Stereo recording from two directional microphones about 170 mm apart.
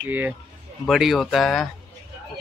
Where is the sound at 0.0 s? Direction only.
10° right (ahead or behind).